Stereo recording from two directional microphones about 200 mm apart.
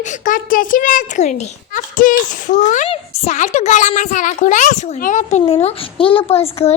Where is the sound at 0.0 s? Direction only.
40° left (ahead or behind).